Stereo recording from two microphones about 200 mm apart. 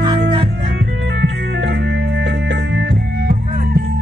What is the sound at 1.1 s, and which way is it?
Music, 60° right (ahead or behind).